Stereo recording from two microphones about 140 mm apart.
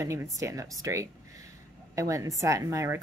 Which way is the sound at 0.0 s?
20° right (ahead or behind).